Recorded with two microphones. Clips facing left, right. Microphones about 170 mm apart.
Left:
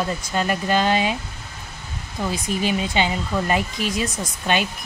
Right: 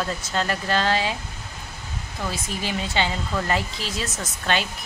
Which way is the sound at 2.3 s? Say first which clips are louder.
Left 8 dB; 15° left (ahead or behind).